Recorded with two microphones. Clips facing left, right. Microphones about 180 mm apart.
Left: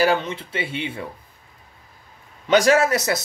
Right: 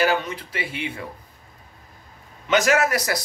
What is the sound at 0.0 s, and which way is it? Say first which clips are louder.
Speech: left 2 dB; 30° left (ahead or behind).